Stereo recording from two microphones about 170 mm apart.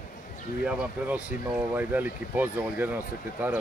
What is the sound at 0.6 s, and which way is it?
Speech, 10° right (ahead or behind).